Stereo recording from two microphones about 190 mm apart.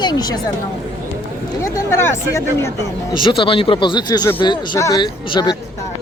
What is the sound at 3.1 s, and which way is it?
Speech, 25° left (ahead or behind).